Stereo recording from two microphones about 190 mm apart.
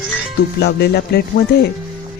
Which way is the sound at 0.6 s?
60° left (ahead or behind).